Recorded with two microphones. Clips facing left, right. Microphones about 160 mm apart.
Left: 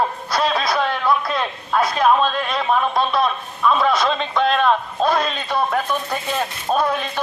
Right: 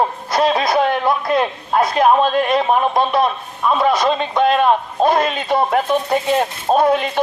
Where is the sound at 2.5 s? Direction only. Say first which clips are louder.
Right 4 dB; 20° right (ahead or behind).